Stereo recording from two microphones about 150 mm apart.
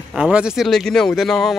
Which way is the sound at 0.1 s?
5° right (ahead or behind).